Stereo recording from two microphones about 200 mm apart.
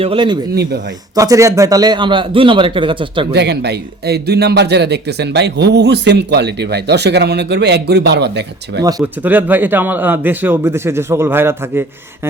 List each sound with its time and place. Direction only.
0.0 s a man's voice: 25° right (ahead or behind)
0.5 s speech: 55° right (ahead or behind)
1.1 s a man's voice: 15° right (ahead or behind)
3.3 s speech: 60° right (ahead or behind)
8.8 s a man's voice: 20° right (ahead or behind)